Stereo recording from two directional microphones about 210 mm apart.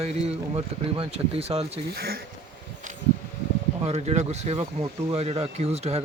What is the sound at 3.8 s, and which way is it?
Speech, 30° right (ahead or behind).